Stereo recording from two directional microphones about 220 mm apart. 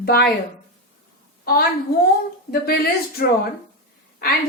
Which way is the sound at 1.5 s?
45° left (ahead or behind).